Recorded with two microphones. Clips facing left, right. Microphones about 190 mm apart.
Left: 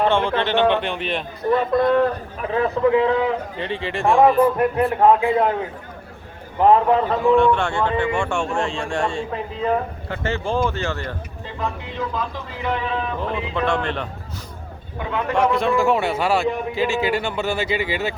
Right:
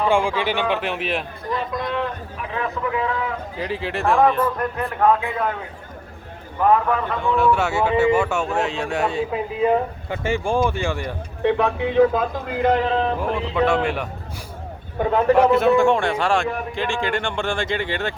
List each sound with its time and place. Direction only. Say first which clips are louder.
0.1 s speech: even; 10° right (ahead or behind)
1.5 s speech: left 10 dB; 55° left (ahead or behind)
2.0 s a man's voice: left 6 dB; 35° left (ahead or behind)
3.6 s a man's voice: right 4 dB; centre (ahead or behind)
4.5 s a man's voice: left 6 dB; 25° left (ahead or behind)
6.6 s a man's voice: left 3 dB; 25° left (ahead or behind)
7.3 s speech: left 2 dB; 5° right (ahead or behind)
11.4 s a man's voice: right 10 dB; 70° right (ahead or behind); by 13.1 s 35° right (ahead or behind)
13.6 s speech: right 3 dB; 10° right (ahead or behind)
14.9 s a man's voice: right 7 dB; 40° right (ahead or behind)
15.4 s a man's voice: right 1 dB; 5° right (ahead or behind)